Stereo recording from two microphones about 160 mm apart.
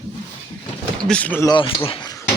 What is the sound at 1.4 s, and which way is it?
Speech, 30° left (ahead or behind).